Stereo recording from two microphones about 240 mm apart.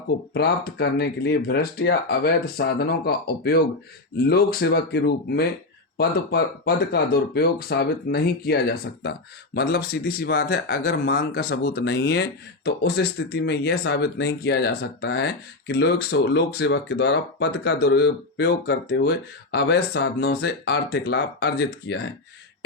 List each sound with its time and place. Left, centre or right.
0.3 s speech: left